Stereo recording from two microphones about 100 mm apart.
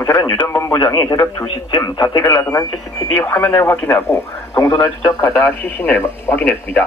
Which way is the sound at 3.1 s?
15° left (ahead or behind).